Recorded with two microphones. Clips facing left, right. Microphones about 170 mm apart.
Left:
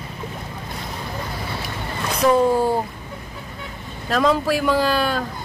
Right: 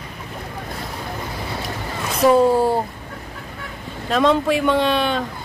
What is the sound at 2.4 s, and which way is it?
Speech, 30° right (ahead or behind).